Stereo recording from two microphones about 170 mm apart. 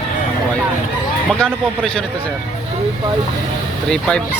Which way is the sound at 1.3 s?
5° left (ahead or behind).